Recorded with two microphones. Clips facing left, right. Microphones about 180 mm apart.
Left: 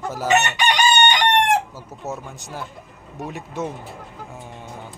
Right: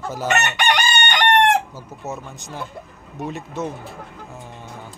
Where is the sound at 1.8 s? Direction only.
10° left (ahead or behind).